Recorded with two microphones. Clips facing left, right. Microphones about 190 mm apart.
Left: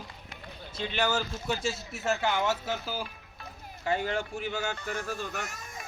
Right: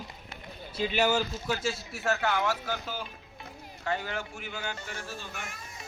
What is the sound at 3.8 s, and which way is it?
Speech, 20° left (ahead or behind).